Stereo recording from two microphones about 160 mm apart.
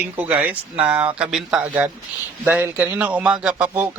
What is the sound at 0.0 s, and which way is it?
Speech, 10° right (ahead or behind).